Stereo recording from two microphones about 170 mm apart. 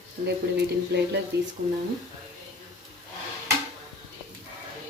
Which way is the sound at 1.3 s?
75° right (ahead or behind).